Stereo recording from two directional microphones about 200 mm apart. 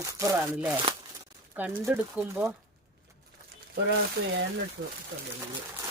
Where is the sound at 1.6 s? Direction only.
10° right (ahead or behind).